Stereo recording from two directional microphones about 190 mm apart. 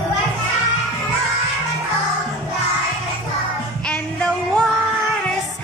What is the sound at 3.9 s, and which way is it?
Music, 5° left (ahead or behind).